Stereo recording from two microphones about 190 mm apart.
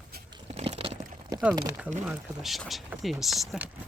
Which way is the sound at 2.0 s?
Centre (ahead or behind).